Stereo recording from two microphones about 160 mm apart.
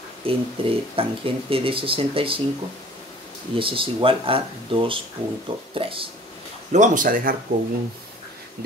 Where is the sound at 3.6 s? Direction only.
35° right (ahead or behind).